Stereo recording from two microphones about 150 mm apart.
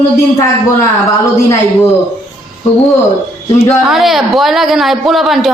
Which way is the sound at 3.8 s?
Centre (ahead or behind).